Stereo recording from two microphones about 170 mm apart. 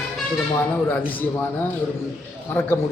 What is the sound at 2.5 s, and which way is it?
Speech, 15° left (ahead or behind).